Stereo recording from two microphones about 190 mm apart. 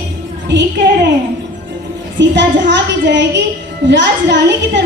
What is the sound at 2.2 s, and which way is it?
A woman's voice, 70° right (ahead or behind).